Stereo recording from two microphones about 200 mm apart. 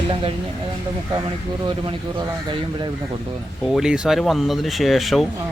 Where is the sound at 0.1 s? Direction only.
25° right (ahead or behind).